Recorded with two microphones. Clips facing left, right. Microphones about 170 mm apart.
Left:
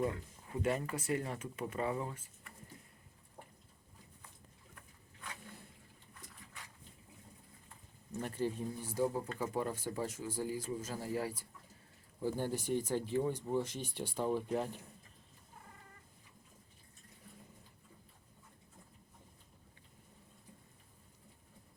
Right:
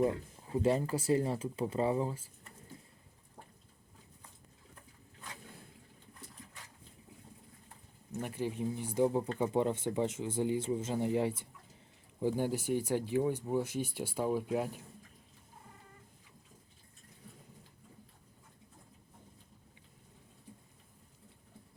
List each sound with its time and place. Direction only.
0.5 s speech: 30° right (ahead or behind)
8.2 s speech: 10° right (ahead or behind)
12.2 s speech: 10° right (ahead or behind)